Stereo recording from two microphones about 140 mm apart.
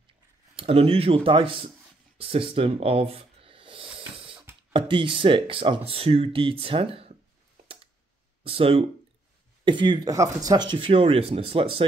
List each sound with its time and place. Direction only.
0.6 s speech: 45° right (ahead or behind)
2.1 s a sound: 40° right (ahead or behind)
4.7 s speech: 35° right (ahead or behind)
8.5 s speech: 40° right (ahead or behind)